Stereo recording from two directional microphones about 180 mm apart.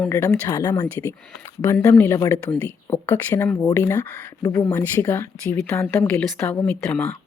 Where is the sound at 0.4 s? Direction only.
20° left (ahead or behind).